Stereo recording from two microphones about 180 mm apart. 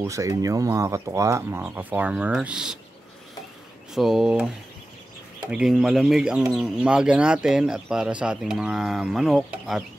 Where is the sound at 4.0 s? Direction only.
Centre (ahead or behind).